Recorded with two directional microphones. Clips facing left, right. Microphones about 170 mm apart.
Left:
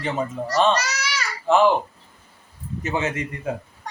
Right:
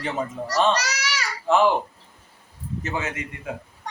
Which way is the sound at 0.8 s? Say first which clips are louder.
Left 1 dB; 80° right.